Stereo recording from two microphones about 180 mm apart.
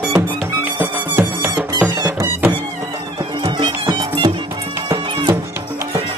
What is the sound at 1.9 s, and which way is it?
Music, 20° right (ahead or behind).